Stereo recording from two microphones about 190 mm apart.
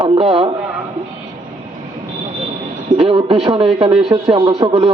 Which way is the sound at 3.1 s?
30° right (ahead or behind).